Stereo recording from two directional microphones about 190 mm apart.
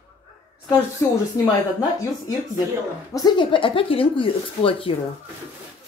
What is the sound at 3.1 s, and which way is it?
Speech, 25° left (ahead or behind).